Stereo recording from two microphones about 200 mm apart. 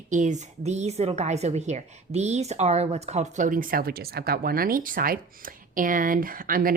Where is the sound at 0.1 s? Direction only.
40° right (ahead or behind).